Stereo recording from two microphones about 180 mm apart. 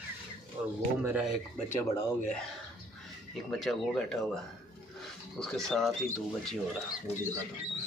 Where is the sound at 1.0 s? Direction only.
5° right (ahead or behind).